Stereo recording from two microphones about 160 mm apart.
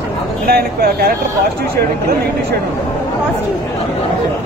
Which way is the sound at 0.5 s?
75° right (ahead or behind).